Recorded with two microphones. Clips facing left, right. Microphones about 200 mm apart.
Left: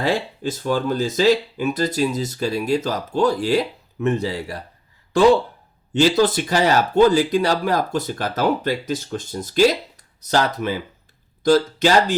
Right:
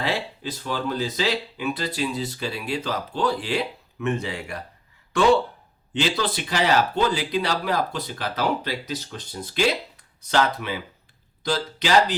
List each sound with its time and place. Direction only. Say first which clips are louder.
0.0 s speech: left 6 dB; 45° left (ahead or behind)